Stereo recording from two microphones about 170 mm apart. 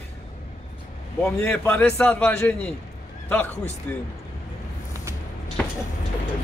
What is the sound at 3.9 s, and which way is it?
Speech, 10° left (ahead or behind).